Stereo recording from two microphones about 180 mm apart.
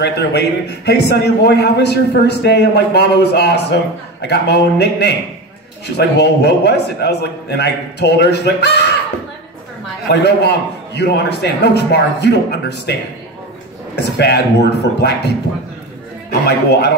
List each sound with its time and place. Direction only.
0.0 s a man's voice: 65° left (ahead or behind)
11.0 s a man's voice: 70° left (ahead or behind)
13.9 s a man's voice: 65° left (ahead or behind)
16.4 s a man's voice: 65° left (ahead or behind)